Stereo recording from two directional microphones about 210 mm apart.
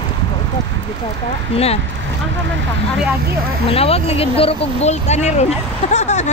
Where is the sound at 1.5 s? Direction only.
30° left (ahead or behind).